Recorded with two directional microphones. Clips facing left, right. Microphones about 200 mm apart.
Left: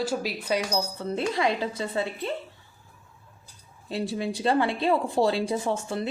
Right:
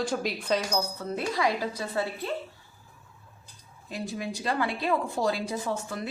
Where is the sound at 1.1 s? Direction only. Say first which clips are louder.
Left 3 dB; 25° left (ahead or behind).